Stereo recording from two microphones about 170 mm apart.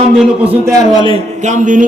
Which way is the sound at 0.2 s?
5° right (ahead or behind).